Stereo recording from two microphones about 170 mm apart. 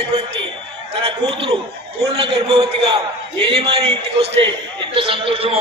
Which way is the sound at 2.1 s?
30° right (ahead or behind).